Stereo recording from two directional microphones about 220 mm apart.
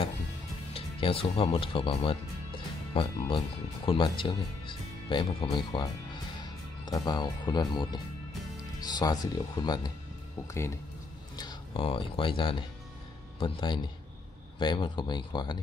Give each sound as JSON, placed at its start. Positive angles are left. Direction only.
{"t": 0.7, "sound": "speech", "side_deg": 25}